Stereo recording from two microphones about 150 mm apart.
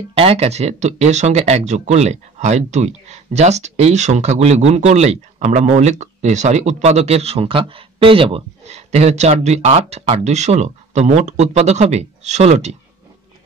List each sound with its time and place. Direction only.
0.1 s speech: 40° right (ahead or behind)